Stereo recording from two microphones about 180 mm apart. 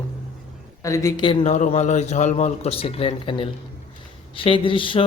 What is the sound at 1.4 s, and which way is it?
Speech, 40° left (ahead or behind).